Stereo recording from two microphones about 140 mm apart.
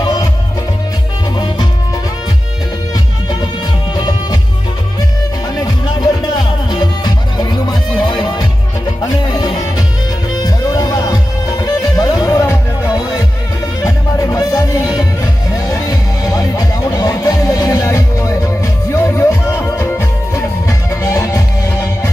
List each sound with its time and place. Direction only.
0.0 s music: 30° left (ahead or behind)
3.9 s music: 30° left (ahead or behind)
6.7 s music: 30° left (ahead or behind)